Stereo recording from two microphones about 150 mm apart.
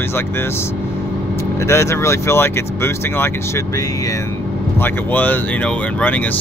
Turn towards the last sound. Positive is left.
turn(degrees=10)  # may be behind; listen again after turning